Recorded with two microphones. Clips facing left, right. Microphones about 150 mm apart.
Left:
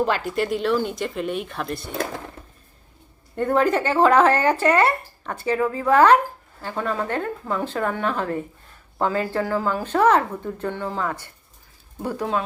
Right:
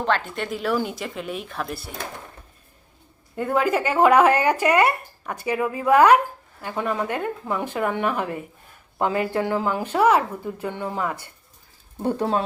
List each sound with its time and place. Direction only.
0.0 s a woman's voice: 5° left (ahead or behind)
3.3 s speech: 5° right (ahead or behind)
12.0 s speech: 30° right (ahead or behind)